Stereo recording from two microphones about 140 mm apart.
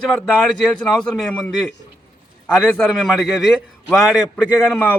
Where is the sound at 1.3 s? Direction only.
10° left (ahead or behind).